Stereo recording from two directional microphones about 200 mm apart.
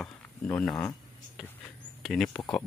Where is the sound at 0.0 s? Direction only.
5° left (ahead or behind).